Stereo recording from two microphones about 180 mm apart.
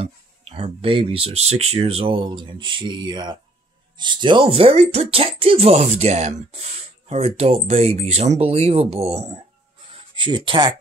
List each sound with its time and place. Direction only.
0.0 s speech: 30° right (ahead or behind)